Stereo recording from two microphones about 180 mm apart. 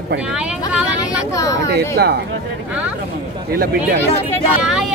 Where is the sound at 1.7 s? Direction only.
65° right (ahead or behind).